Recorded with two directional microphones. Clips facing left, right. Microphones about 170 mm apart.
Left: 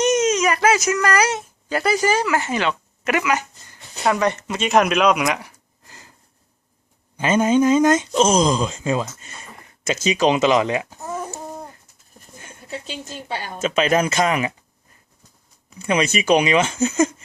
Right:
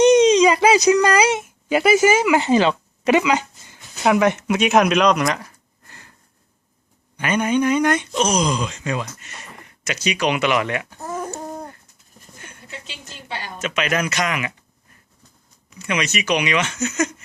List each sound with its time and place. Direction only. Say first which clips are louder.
0.4 s a sound: right 3 dB; 15° right (ahead or behind)
0.9 s speech: right 4 dB; 25° right (ahead or behind)
2.5 s speech: right 6 dB; 30° right (ahead or behind); by 5.4 s 5° left (ahead or behind)
7.2 s speech: left 3 dB; 25° left (ahead or behind)
10.9 s a sound: right 1 dB; 5° left (ahead or behind)
12.9 s speech: left 3 dB; 40° left (ahead or behind)
15.9 s speech: left 4 dB; 30° left (ahead or behind)